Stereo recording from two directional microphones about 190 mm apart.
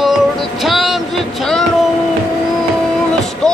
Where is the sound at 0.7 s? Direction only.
Centre (ahead or behind).